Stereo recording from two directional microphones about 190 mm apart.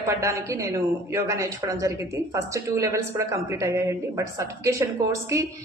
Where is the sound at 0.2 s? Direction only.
15° right (ahead or behind).